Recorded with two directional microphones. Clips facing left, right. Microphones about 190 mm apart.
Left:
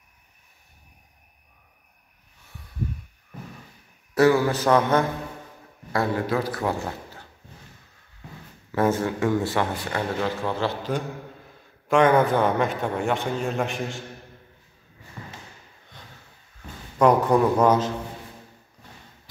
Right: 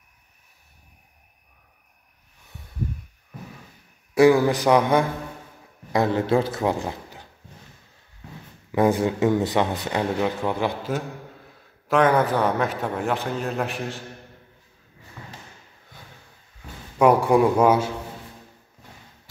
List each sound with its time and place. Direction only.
4.1 s a man's voice: 15° right (ahead or behind)
5.9 s a man's voice: 25° right (ahead or behind)
8.7 s a man's voice: 15° right (ahead or behind)
17.0 s a man's voice: 10° right (ahead or behind)